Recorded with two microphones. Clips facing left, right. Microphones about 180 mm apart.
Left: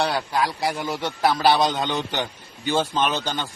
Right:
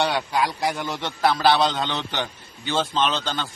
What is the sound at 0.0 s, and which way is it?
A man's voice, centre (ahead or behind).